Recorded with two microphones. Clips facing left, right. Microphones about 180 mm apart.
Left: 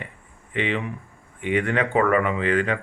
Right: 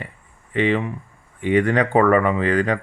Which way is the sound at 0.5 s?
40° right (ahead or behind).